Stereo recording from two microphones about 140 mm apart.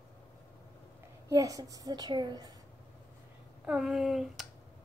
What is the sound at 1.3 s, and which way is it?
A woman's voice, 25° right (ahead or behind).